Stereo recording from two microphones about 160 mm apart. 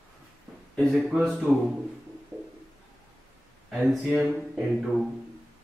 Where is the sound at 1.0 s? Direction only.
5° right (ahead or behind).